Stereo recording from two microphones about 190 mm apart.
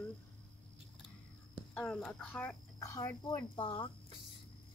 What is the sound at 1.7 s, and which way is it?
Speech, centre (ahead or behind).